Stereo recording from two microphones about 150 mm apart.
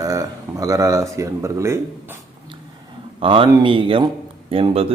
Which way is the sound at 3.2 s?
35° right (ahead or behind).